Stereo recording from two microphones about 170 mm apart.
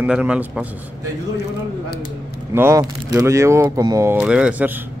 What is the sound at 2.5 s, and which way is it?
Speech, 15° right (ahead or behind).